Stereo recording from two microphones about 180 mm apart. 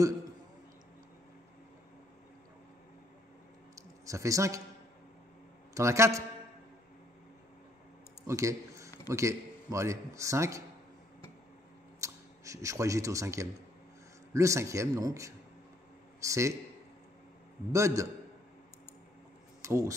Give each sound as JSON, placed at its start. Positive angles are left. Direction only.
{"t": 3.7, "sound": "a sound", "side_deg": -15}
{"t": 5.8, "sound": "a man's voice", "side_deg": -15}
{"t": 8.3, "sound": "a sound", "side_deg": -15}
{"t": 9.1, "sound": "a man's voice", "side_deg": -15}
{"t": 12.0, "sound": "a man's voice", "side_deg": -15}
{"t": 17.7, "sound": "a man's voice", "side_deg": -15}
{"t": 19.6, "sound": "speech", "side_deg": -15}